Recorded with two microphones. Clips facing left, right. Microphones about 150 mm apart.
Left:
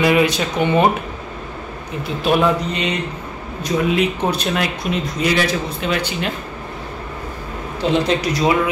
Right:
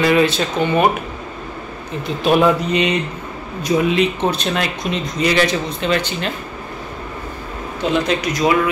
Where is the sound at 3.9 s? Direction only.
5° left (ahead or behind).